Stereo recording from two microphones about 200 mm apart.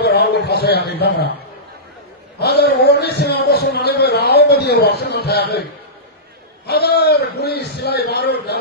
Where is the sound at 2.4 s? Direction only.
55° left (ahead or behind).